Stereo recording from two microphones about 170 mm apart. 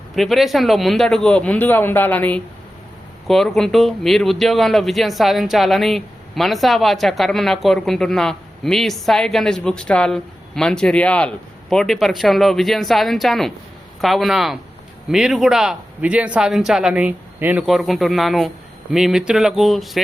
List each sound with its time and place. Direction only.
0.2 s speech: centre (ahead or behind)